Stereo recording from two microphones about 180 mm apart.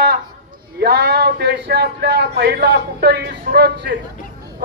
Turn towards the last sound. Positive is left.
turn(degrees=-65)  # may be behind; listen again after turning